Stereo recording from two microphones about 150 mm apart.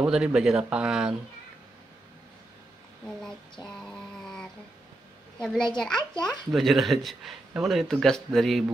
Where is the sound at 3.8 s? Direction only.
5° left (ahead or behind).